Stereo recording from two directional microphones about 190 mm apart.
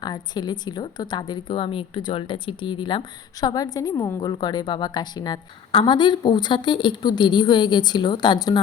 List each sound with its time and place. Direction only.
0.0 s a woman's voice: 20° left (ahead or behind)